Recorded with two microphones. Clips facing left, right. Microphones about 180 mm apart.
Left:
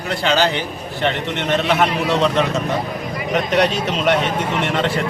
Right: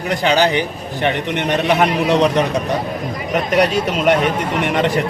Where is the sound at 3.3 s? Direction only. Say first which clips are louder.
Right 2 dB; 10° right (ahead or behind).